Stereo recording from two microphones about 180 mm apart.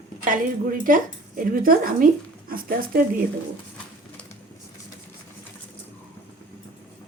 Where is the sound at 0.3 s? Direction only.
50° right (ahead or behind).